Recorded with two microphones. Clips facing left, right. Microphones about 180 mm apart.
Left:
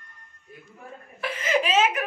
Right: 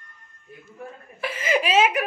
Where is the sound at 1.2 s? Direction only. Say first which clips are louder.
Right 1 dB; 5° right (ahead or behind).